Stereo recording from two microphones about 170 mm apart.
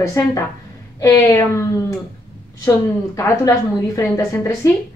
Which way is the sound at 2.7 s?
15° left (ahead or behind).